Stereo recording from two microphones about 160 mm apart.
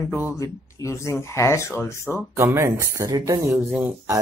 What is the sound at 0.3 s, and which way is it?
Speech, 20° left (ahead or behind).